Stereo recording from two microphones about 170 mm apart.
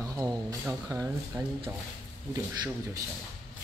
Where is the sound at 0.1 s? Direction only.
20° right (ahead or behind).